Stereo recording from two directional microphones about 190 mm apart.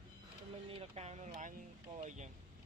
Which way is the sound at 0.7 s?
30° right (ahead or behind).